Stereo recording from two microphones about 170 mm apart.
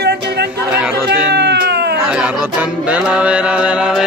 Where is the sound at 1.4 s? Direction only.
75° right (ahead or behind).